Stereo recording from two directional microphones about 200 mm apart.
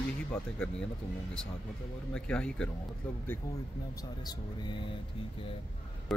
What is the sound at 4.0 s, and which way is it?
Speech, 20° left (ahead or behind).